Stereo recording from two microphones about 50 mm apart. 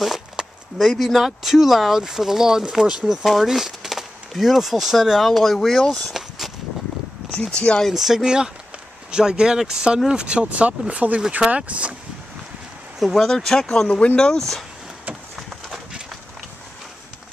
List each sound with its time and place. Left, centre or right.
0.0 s speech: centre
6.1 s a sound: centre
7.4 s speech: left
7.8 s speech: centre; by 11.9 s right
13.0 s speech: centre
13.3 s speech: centre